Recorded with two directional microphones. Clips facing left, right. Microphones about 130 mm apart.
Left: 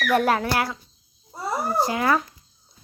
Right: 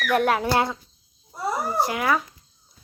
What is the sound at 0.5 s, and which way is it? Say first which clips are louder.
Speech: right 3 dB; 20° right (ahead or behind).